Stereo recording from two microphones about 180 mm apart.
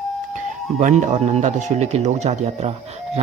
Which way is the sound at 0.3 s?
45° right (ahead or behind).